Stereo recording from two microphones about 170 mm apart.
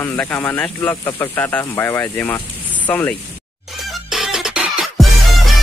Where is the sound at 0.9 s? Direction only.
20° left (ahead or behind).